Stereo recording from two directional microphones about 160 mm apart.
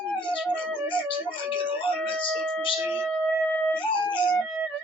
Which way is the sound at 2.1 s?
5° left (ahead or behind).